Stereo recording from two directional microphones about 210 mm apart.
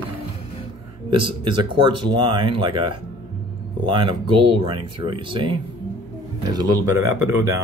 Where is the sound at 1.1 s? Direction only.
25° right (ahead or behind).